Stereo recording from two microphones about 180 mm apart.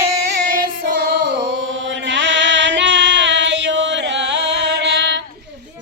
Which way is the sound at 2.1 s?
80° right.